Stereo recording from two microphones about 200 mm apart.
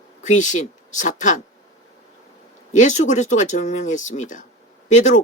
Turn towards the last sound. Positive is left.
turn(degrees=35)  # may be behind; listen again after turning